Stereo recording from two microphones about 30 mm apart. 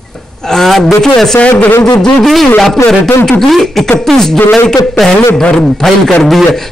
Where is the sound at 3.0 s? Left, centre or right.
Centre.